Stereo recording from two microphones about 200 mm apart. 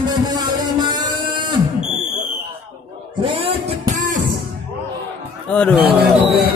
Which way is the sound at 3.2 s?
25° right (ahead or behind).